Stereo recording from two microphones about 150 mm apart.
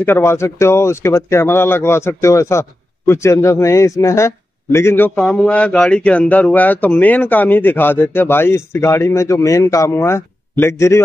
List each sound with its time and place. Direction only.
0.0 s speech: 15° left (ahead or behind)
5.1 s speech: 5° left (ahead or behind); by 11.0 s 20° left (ahead or behind)